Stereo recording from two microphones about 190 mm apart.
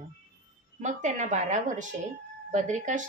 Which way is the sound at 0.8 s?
40° right (ahead or behind).